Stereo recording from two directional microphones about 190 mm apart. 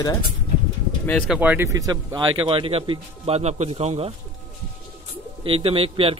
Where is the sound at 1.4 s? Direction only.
10° right (ahead or behind); by 4.1 s 35° right (ahead or behind).